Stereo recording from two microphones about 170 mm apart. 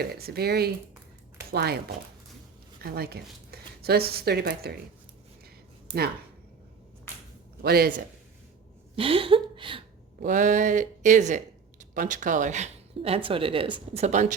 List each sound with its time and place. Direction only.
0.0 s speech: 65° right (ahead or behind)
1.4 s a sound: 70° right (ahead or behind)
2.8 s a woman's voice: 65° right (ahead or behind)
7.6 s a man's voice: 65° right (ahead or behind)
9.0 s a sound: 30° right (ahead or behind)
10.2 s speech: 50° right (ahead or behind)